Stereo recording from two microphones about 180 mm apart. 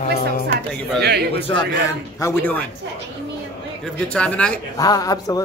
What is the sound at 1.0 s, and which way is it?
Speech, 65° right (ahead or behind).